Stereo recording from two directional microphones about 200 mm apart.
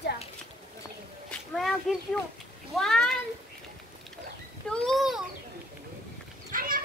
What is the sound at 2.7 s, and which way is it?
Speech, centre (ahead or behind).